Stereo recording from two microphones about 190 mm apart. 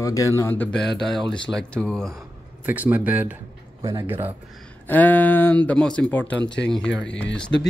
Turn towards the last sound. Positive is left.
turn(degrees=5)  # may be behind; listen again after turning